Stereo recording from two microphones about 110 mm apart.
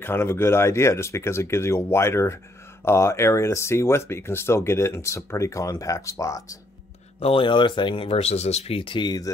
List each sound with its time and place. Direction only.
0.0 s speech: 20° left (ahead or behind)
7.2 s speech: 55° left (ahead or behind); by 9.3 s 40° left (ahead or behind)